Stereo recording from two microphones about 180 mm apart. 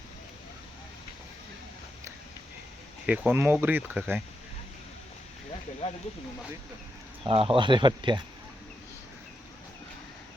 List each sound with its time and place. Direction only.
3.1 s speech: 10° right (ahead or behind)
7.3 s speech: 30° right (ahead or behind)